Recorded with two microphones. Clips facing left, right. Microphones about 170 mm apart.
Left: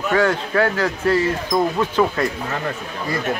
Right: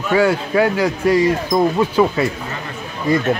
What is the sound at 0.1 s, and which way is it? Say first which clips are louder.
A man's voice: right 4 dB; 10° right (ahead or behind).